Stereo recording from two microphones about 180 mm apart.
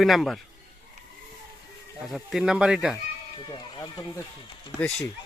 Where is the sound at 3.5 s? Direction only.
20° left (ahead or behind).